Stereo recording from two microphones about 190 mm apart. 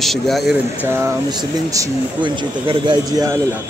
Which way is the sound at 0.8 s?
15° right (ahead or behind).